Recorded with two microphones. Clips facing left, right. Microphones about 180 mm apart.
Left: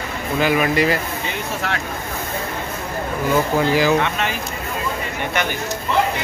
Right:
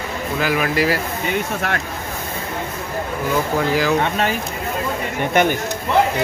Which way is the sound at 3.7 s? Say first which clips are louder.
Left 2 dB; centre (ahead or behind).